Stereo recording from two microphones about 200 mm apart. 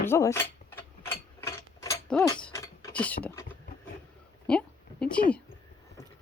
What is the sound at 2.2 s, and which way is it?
Mechanisms, 15° left (ahead or behind).